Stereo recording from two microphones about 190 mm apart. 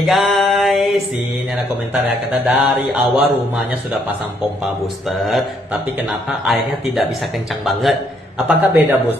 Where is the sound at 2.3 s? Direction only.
5° right (ahead or behind).